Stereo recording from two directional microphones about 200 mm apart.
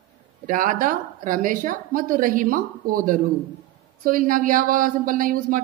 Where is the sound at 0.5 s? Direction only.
40° right (ahead or behind).